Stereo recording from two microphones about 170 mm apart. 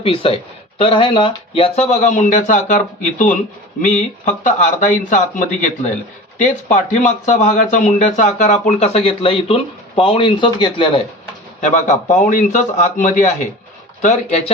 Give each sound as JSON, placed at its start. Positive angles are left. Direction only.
{"t": 0.0, "sound": "speech", "side_deg": 30}
{"t": 11.7, "sound": "speech", "side_deg": 45}